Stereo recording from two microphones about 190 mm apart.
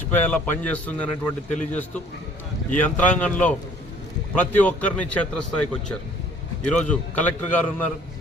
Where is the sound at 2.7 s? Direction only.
10° left (ahead or behind).